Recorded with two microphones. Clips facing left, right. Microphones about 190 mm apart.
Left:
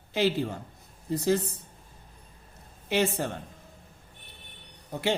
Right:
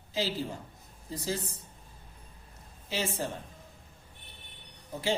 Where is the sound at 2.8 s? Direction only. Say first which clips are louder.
Left 7 dB; 65° left (ahead or behind).